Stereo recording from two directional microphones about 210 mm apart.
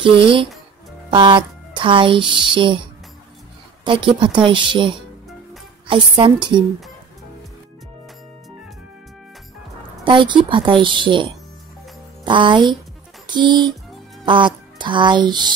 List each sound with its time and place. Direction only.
0.0 s speech: 25° right (ahead or behind)
3.8 s speech: 25° right (ahead or behind)
10.0 s speech: 20° right (ahead or behind)
12.3 s a child's voice: 20° right (ahead or behind)